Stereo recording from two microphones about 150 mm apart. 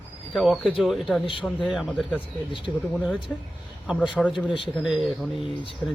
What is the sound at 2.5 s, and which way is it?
Speech, 35° left (ahead or behind).